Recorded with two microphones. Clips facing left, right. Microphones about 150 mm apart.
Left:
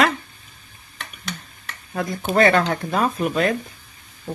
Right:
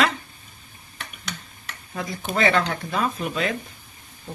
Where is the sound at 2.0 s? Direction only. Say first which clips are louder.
Left 6 dB; 55° left (ahead or behind).